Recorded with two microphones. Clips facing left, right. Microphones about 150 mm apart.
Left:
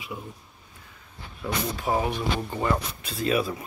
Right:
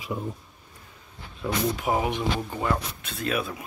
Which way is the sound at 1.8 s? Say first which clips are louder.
Even; 20° right (ahead or behind).